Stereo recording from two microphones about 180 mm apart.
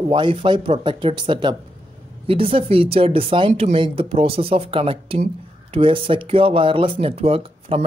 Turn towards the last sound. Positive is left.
turn(degrees=-30)  # may be behind; listen again after turning